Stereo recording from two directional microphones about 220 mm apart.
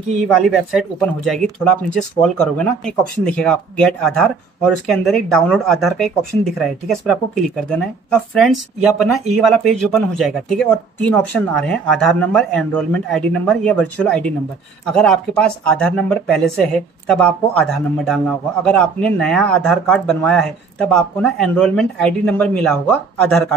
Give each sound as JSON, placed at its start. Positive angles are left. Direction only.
{"t": 0.4, "sound": "speech", "side_deg": 0}